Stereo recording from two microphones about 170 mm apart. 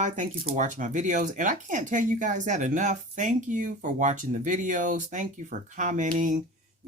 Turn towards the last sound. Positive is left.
turn(degrees=-50)  # may be behind; listen again after turning